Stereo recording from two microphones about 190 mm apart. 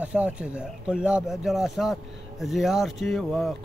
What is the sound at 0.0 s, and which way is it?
Speech, 5° right (ahead or behind).